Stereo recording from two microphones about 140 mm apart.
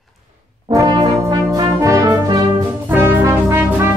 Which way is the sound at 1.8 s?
25° right (ahead or behind).